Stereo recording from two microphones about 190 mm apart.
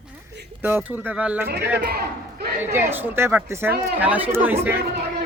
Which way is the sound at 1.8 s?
55° right (ahead or behind).